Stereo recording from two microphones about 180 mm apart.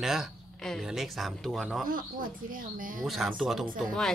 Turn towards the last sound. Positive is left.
turn(degrees=0)  # may be behind; listen again after turning